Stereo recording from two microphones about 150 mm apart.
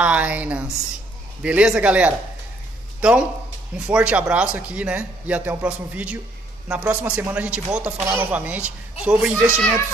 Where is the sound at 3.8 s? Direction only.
10° right (ahead or behind).